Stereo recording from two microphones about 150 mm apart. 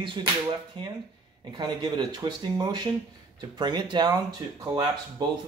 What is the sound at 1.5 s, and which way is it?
Speech, 30° right (ahead or behind).